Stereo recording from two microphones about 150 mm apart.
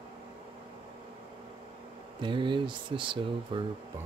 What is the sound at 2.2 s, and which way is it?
Speech, 35° right (ahead or behind).